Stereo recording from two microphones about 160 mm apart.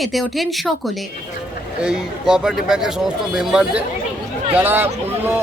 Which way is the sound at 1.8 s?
5° right (ahead or behind).